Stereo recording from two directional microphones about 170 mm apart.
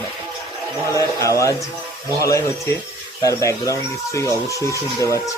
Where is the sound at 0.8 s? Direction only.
20° left (ahead or behind).